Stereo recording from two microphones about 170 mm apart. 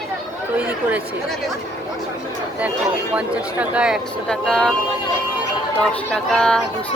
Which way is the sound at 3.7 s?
5° right (ahead or behind).